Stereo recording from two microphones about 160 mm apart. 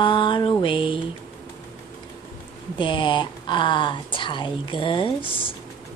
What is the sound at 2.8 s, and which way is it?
Speech, 30° left (ahead or behind).